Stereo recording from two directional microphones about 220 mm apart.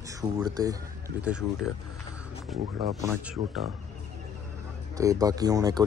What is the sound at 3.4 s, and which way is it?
Speech, 30° right (ahead or behind).